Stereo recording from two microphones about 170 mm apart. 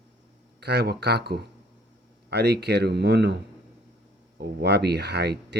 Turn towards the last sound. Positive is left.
turn(degrees=-75)  # may be behind; listen again after turning